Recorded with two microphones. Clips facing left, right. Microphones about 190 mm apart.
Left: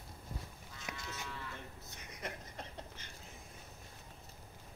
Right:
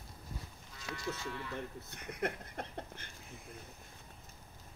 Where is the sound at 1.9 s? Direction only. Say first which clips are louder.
Right 8 dB; 60° right (ahead or behind).